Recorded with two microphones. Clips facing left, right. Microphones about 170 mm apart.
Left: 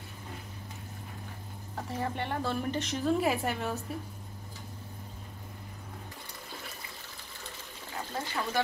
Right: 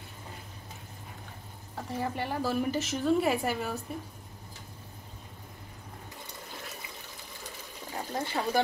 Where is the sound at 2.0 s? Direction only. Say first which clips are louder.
Right 1 dB; 5° right (ahead or behind).